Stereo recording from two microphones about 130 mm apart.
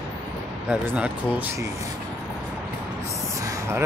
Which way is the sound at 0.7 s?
10° right (ahead or behind).